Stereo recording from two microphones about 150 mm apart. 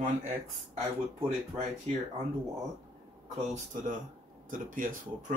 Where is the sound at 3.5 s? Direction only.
55° right (ahead or behind).